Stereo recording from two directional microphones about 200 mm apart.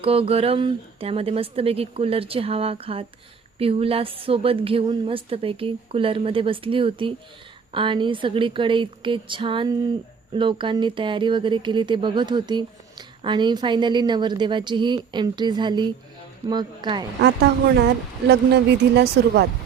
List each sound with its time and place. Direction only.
0.0 s speech: 30° right (ahead or behind)
17.2 s speech: 55° right (ahead or behind)